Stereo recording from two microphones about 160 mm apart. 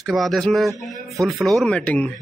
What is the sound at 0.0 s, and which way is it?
Speech, centre (ahead or behind).